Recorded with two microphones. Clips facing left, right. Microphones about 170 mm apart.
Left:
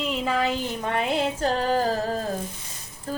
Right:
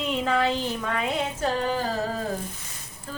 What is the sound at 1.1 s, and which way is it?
Music, 35° left (ahead or behind).